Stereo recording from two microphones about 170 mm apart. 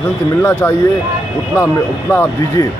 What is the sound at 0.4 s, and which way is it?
Speech, 10° left (ahead or behind).